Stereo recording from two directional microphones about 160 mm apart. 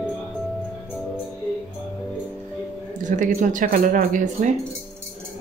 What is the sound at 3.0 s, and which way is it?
Speech, 55° right (ahead or behind).